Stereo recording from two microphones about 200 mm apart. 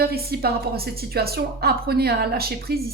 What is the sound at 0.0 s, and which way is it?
Speech, 50° right (ahead or behind).